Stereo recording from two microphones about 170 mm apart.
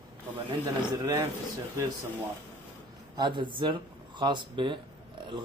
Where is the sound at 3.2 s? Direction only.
30° right (ahead or behind).